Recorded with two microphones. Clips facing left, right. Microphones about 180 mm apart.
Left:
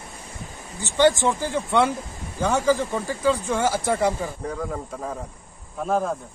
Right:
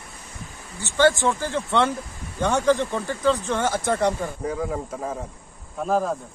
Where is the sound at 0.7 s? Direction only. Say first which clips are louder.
Left 1 dB; 15° left (ahead or behind).